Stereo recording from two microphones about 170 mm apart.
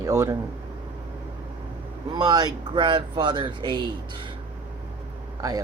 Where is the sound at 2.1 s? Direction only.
25° right (ahead or behind).